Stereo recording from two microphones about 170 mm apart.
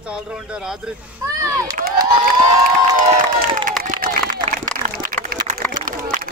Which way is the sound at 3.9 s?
60° right (ahead or behind).